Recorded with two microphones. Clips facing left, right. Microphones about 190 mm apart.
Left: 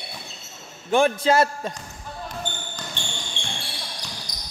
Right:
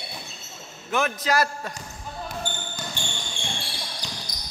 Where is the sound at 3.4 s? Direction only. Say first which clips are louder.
Right 1 dB; 50° right (ahead or behind).